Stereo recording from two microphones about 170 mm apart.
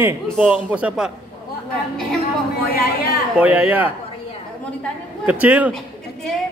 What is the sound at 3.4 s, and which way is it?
Speech, 10° right (ahead or behind).